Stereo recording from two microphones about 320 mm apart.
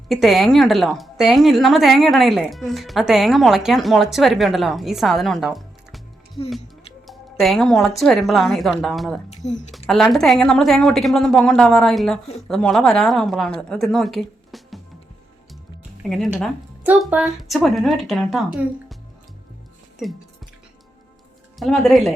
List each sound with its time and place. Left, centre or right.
0.1 s a woman's voice: centre
9.3 s speech: left
9.7 s a woman's voice: centre
16.0 s a woman's voice: centre
21.6 s a woman's voice: centre